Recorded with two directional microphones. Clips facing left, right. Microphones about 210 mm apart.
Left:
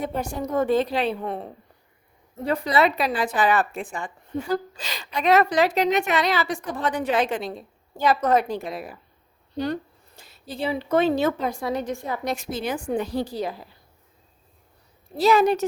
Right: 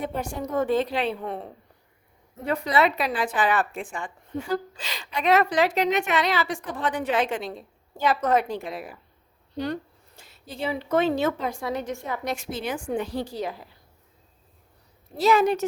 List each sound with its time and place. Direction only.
0.0 s a woman's voice: 40° left (ahead or behind)
10.2 s a woman's voice: 35° left (ahead or behind)
15.2 s a woman's voice: 35° left (ahead or behind)